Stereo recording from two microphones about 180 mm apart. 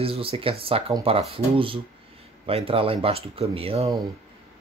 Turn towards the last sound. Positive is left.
turn(degrees=-35)  # may be behind; listen again after turning